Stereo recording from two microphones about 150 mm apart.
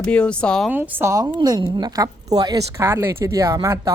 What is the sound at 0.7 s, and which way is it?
Speech, 15° right (ahead or behind).